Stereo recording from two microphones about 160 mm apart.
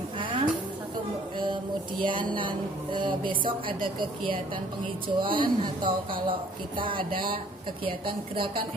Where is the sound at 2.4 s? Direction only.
30° right (ahead or behind).